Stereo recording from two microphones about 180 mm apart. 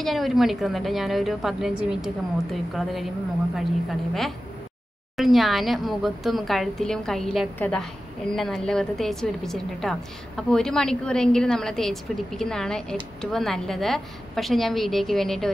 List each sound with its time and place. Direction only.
0.0 s a woman's voice: centre (ahead or behind)